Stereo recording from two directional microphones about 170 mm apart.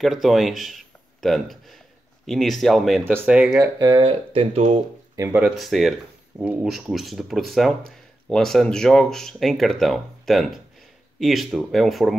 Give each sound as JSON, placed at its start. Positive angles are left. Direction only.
{"t": 0.0, "sound": "speech", "side_deg": 0}
{"t": 5.1, "sound": "speech", "side_deg": -15}
{"t": 5.4, "sound": "speech", "side_deg": 0}